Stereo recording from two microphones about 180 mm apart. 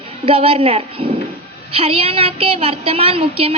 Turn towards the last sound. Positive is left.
turn(degrees=-30)  # may be behind; listen again after turning